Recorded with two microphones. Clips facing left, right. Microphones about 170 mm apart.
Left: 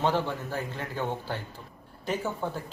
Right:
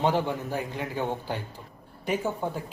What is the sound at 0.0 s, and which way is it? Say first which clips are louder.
Speech: right 2 dB; 15° right (ahead or behind).